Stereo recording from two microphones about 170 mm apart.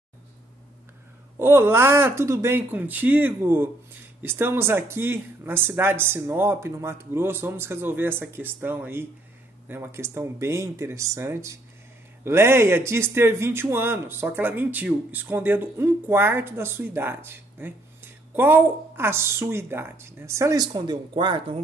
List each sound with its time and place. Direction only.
1.4 s a man's voice: 15° right (ahead or behind)